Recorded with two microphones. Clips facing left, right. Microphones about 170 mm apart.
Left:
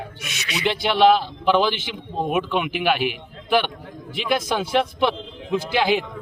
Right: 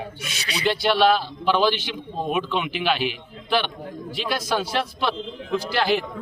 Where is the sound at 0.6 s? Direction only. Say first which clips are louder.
Left 2 dB; 20° left (ahead or behind).